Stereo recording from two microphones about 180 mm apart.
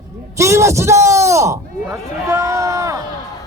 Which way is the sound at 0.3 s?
15° right (ahead or behind).